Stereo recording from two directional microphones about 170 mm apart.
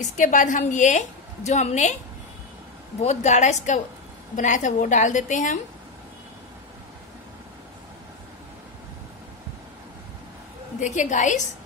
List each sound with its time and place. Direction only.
0.0 s a woman's voice: 50° left (ahead or behind)
3.0 s a woman's voice: 40° left (ahead or behind)
10.8 s a woman's voice: 45° left (ahead or behind)